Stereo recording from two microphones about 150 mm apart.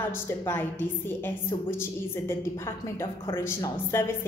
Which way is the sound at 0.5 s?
15° left (ahead or behind).